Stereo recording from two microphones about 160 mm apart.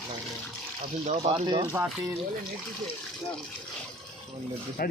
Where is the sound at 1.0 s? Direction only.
35° right (ahead or behind).